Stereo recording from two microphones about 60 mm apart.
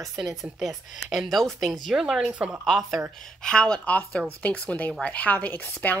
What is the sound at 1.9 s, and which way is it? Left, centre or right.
Speech, centre.